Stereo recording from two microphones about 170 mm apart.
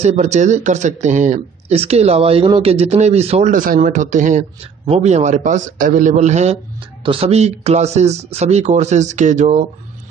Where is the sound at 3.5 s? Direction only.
55° right (ahead or behind).